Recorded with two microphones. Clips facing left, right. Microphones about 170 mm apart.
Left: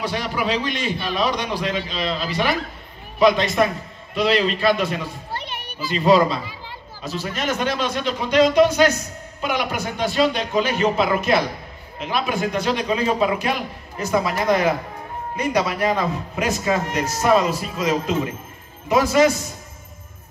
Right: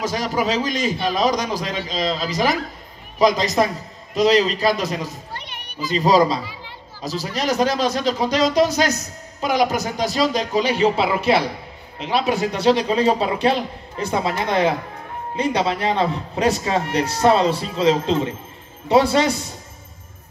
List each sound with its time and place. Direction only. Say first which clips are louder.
0.0 s a man's voice: right 2 dB; 40° right (ahead or behind)